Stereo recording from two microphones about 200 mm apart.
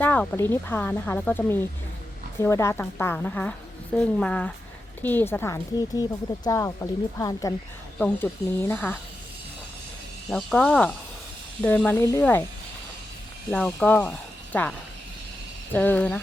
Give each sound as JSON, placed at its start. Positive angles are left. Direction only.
{"t": 0.0, "sound": "speech", "side_deg": 10}
{"t": 10.3, "sound": "speech", "side_deg": 0}
{"t": 13.5, "sound": "speech", "side_deg": 5}